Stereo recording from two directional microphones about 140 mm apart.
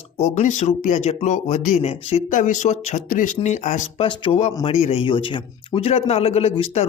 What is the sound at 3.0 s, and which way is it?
Speech, 70° left (ahead or behind).